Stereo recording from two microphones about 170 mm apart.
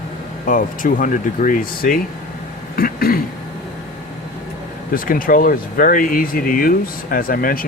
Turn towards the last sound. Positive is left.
turn(degrees=55)  # may be behind; listen again after turning